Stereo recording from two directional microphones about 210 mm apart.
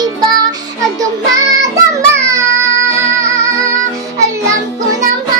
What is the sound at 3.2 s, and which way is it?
Music, 15° right (ahead or behind).